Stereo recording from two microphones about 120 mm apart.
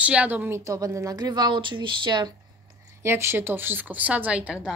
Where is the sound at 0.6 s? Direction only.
30° right (ahead or behind).